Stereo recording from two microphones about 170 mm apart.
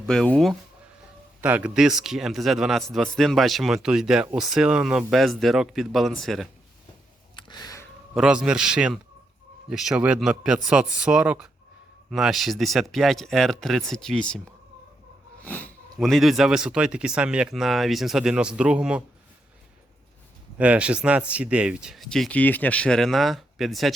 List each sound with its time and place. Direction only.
0.0 s a man's voice: 5° left (ahead or behind)
7.3 s a sound: 25° left (ahead or behind)
8.1 s a man's voice: 5° right (ahead or behind)
15.4 s a man's voice: 10° left (ahead or behind); by 19.0 s 5° right (ahead or behind)
20.6 s a man's voice: 5° right (ahead or behind)